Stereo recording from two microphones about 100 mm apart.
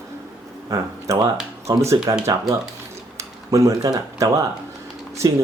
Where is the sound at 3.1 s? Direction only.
30° right (ahead or behind).